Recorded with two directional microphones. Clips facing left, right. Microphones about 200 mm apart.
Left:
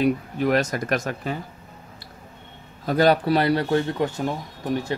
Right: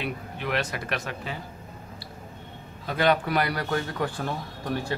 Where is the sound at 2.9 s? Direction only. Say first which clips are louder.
Left 5 dB; 35° left (ahead or behind).